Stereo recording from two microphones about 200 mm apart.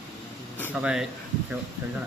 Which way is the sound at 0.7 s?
5° right (ahead or behind).